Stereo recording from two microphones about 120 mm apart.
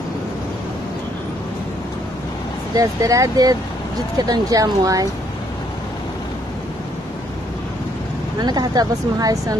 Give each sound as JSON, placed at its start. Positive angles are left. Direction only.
{"t": 2.7, "sound": "speech", "side_deg": -30}
{"t": 8.4, "sound": "speech", "side_deg": -35}